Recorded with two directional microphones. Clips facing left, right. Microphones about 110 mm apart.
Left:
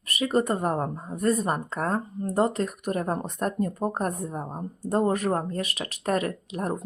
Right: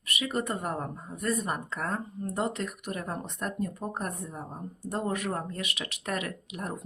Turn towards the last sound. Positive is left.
turn(degrees=35)  # may be behind; listen again after turning